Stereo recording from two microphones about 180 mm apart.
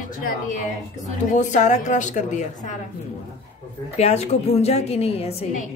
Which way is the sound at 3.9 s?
35° left (ahead or behind).